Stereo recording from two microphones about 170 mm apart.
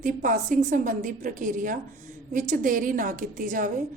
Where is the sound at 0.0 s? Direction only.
50° right (ahead or behind).